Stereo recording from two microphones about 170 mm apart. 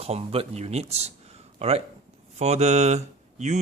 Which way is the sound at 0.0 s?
35° right (ahead or behind).